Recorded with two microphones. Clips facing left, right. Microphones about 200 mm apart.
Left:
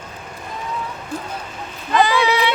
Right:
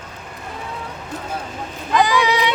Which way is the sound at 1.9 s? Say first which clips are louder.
Even; 15° right (ahead or behind).